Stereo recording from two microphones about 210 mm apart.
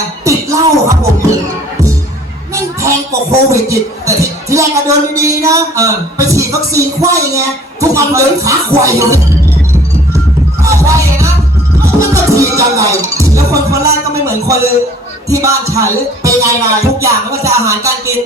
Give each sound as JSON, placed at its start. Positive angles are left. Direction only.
{"t": 0.3, "sound": "music", "side_deg": -15}
{"t": 2.5, "sound": "a man's voice", "side_deg": -15}
{"t": 10.7, "sound": "music", "side_deg": -15}
{"t": 15.3, "sound": "a man's voice", "side_deg": -15}